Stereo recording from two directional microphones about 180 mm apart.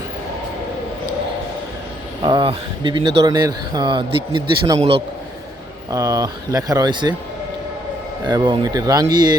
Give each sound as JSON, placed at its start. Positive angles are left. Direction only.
{"t": 2.2, "sound": "a man's voice", "side_deg": -30}
{"t": 5.9, "sound": "a man's voice", "side_deg": -20}
{"t": 8.3, "sound": "a man's voice", "side_deg": -25}